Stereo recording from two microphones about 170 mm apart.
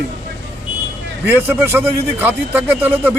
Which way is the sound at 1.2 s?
10° right (ahead or behind).